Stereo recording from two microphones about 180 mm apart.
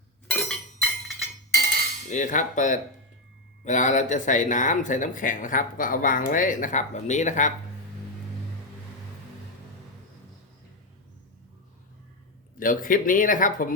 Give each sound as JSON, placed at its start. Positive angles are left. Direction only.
{"t": 0.3, "sound": "chink", "side_deg": 5}
{"t": 2.0, "sound": "speech", "side_deg": 45}
{"t": 12.5, "sound": "speech", "side_deg": 50}